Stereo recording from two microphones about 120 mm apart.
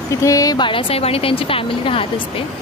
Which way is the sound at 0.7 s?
50° left (ahead or behind).